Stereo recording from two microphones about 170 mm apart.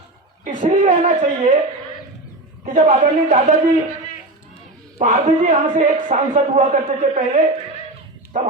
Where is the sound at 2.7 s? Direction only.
45° right (ahead or behind).